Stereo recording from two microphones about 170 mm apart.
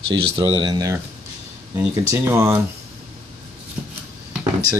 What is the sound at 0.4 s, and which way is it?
Speech, 25° right (ahead or behind).